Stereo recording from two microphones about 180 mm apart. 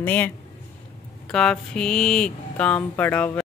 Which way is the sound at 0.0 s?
10° left (ahead or behind).